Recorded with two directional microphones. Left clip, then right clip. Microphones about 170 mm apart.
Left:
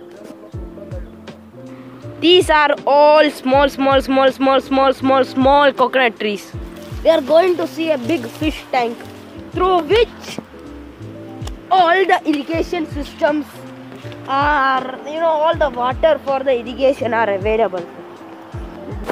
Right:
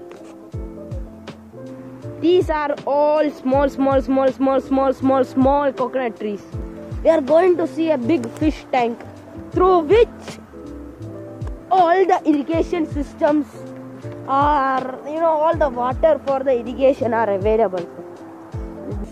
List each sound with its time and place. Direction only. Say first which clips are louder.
2.1 s speech: left 6 dB; centre (ahead or behind)
3.6 s speech: left 3 dB; 10° right (ahead or behind)
5.5 s speech: left 6 dB; centre (ahead or behind)
7.0 s speech: left 2 dB; 15° right (ahead or behind)
11.7 s speech: left 2 dB; 20° right (ahead or behind)
15.8 s speech: left 2 dB; 5° right (ahead or behind)